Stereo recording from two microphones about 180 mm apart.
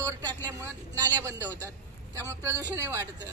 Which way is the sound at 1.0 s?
15° right (ahead or behind).